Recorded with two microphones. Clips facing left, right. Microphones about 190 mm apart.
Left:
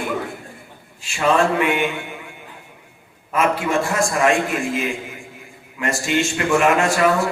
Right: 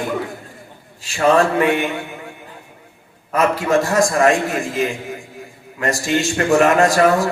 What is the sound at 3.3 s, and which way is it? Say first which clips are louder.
A man's voice: right 3 dB; 40° right (ahead or behind).